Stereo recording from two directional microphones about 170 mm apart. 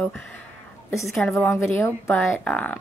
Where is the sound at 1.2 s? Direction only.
Centre (ahead or behind).